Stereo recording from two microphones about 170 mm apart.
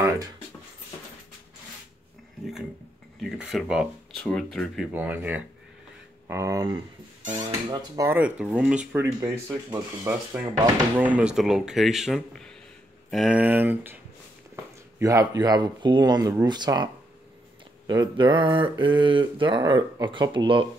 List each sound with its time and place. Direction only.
3.2 s speech: centre (ahead or behind)
4.9 s speech: 10° right (ahead or behind)
7.7 s mantra: 20° right (ahead or behind)
8.2 s speech: 10° right (ahead or behind); by 16.9 s 25° right (ahead or behind)
17.8 s mantra: 25° right (ahead or behind)